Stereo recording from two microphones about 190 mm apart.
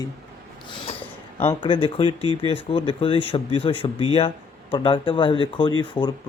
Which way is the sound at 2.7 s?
30° left (ahead or behind).